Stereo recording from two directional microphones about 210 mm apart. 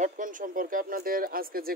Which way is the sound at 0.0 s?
40° right (ahead or behind).